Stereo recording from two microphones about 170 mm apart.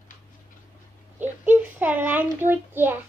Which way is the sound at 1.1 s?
10° right (ahead or behind).